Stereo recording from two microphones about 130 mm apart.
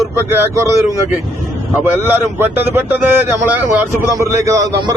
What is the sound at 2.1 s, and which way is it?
A man's voice, 15° right (ahead or behind).